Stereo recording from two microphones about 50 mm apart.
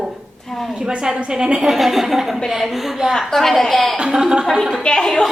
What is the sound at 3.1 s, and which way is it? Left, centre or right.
Speech, centre.